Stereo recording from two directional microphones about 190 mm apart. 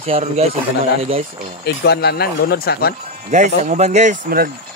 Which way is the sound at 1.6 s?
60° left (ahead or behind).